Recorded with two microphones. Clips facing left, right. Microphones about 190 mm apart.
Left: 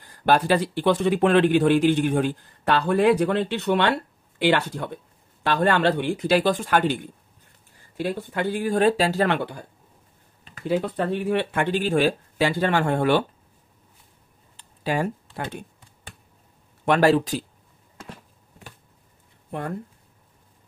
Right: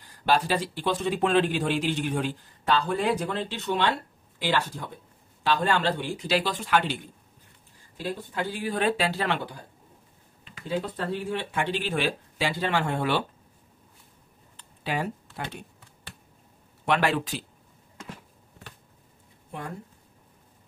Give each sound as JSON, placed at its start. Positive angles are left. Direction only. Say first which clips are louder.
{"t": 0.0, "sound": "speech", "louder": "left 4 dB", "side_deg": 55}
{"t": 8.0, "sound": "speech", "louder": "left 5 dB", "side_deg": 60}
{"t": 10.7, "sound": "speech", "louder": "left 6 dB", "side_deg": 65}
{"t": 14.8, "sound": "speech", "louder": "left 5 dB", "side_deg": 45}
{"t": 16.8, "sound": "speech", "louder": "left 7 dB", "side_deg": 40}